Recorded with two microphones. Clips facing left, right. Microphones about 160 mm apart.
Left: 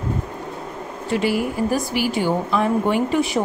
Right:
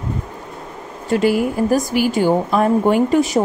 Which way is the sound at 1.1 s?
45° right (ahead or behind).